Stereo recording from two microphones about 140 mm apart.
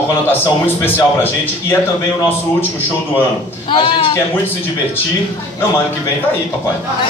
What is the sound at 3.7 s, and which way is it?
Speech, 40° left (ahead or behind).